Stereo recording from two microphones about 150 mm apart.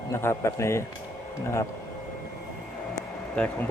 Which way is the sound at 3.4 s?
5° left (ahead or behind).